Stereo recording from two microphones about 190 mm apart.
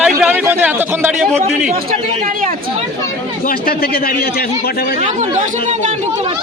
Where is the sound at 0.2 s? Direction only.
10° right (ahead or behind).